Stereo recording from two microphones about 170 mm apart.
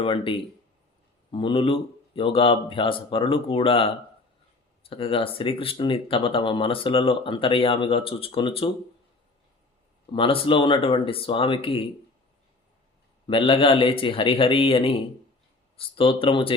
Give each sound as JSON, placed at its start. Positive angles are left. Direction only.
{"t": 0.0, "sound": "speech", "side_deg": 30}
{"t": 10.1, "sound": "speech", "side_deg": 30}
{"t": 13.2, "sound": "speech", "side_deg": 30}